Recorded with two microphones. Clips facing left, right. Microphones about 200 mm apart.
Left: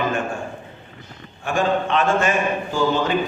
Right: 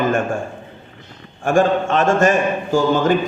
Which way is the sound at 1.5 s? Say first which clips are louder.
Right 5 dB; 45° right (ahead or behind).